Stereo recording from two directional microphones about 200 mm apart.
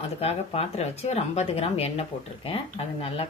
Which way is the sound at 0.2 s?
30° left (ahead or behind).